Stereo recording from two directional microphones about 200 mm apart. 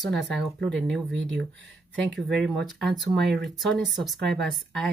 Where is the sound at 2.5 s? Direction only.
Centre (ahead or behind).